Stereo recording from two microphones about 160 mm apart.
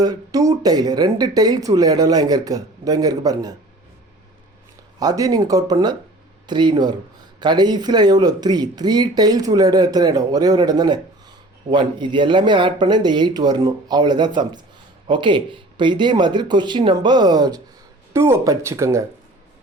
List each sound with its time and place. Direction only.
0.0 s speech: 25° right (ahead or behind)
4.9 s speech: 20° right (ahead or behind)